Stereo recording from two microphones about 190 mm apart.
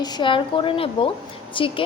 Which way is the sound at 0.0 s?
25° left (ahead or behind).